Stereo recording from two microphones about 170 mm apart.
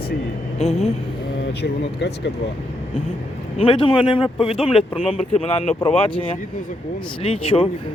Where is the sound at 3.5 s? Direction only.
30° left (ahead or behind).